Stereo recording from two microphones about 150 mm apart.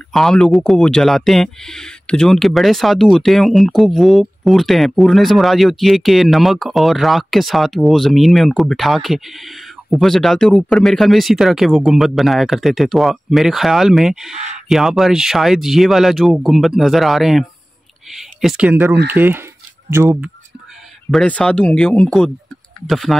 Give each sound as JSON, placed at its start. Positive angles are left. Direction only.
{"t": 0.1, "sound": "speech", "side_deg": 5}
{"t": 21.1, "sound": "speech", "side_deg": 5}